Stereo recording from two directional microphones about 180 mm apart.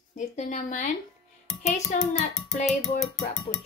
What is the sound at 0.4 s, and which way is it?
Speech, 45° left (ahead or behind).